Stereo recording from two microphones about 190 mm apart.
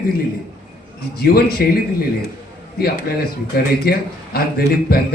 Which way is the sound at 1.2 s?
55° left (ahead or behind).